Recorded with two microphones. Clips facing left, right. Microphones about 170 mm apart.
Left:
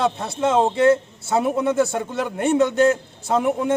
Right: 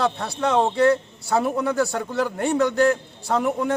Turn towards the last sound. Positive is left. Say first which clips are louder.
# left 2 dB
turn(degrees=20)  # may be behind; listen again after turning